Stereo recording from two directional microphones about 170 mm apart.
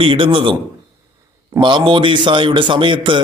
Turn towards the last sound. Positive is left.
turn(degrees=-30)  # may be behind; listen again after turning